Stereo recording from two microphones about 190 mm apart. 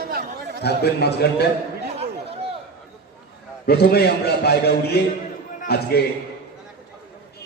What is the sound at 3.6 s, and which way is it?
A man's voice, 55° left (ahead or behind).